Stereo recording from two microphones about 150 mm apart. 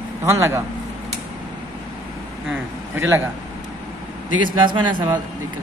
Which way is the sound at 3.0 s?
15° right (ahead or behind).